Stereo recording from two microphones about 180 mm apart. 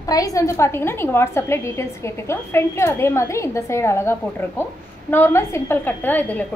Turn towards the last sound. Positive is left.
turn(degrees=10)  # may be behind; listen again after turning